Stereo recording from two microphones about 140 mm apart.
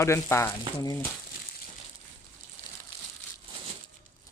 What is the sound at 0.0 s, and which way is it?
Speech, 20° left (ahead or behind).